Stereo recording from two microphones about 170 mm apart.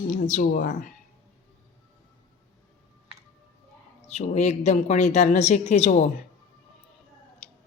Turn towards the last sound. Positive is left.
turn(degrees=40)  # may be behind; listen again after turning